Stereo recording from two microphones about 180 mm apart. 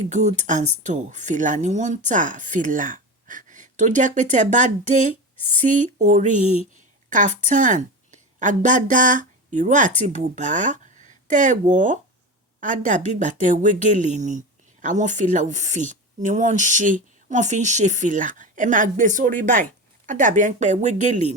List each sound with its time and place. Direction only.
0.0 s a woman's voice: 40° right (ahead or behind)
6.4 s speech: 35° left (ahead or behind)
7.1 s a woman's voice: 45° right (ahead or behind)